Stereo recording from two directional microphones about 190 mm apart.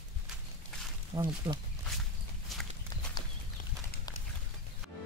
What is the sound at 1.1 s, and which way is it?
Speech, 20° right (ahead or behind).